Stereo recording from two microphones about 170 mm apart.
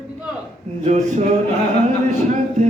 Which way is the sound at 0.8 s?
40° right (ahead or behind).